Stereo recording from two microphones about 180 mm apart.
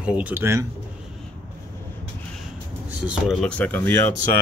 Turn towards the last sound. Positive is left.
turn(degrees=15)  # may be behind; listen again after turning